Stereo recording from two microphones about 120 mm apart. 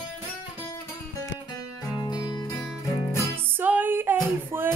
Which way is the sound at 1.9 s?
30° left (ahead or behind).